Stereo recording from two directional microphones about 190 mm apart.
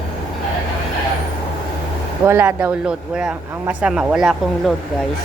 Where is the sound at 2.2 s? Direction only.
10° right (ahead or behind).